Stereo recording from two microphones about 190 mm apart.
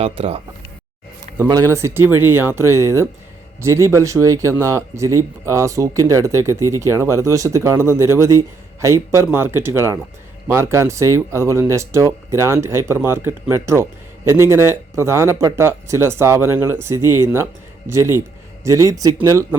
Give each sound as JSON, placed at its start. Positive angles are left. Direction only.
{"t": 0.0, "sound": "speech", "side_deg": -30}
{"t": 1.4, "sound": "speech", "side_deg": -20}